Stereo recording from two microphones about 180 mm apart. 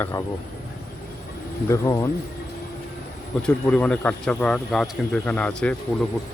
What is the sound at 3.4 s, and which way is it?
Speech, 5° left (ahead or behind).